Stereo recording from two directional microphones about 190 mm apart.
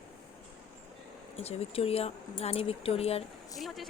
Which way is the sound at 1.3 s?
35° left (ahead or behind).